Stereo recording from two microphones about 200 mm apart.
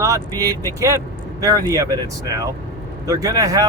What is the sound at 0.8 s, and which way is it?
Speech, 15° right (ahead or behind).